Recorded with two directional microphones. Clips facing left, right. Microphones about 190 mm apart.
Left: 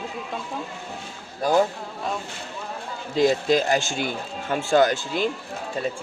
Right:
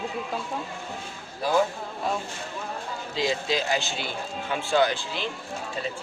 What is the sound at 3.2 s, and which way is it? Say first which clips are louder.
Speech: left 7 dB; 50° left (ahead or behind).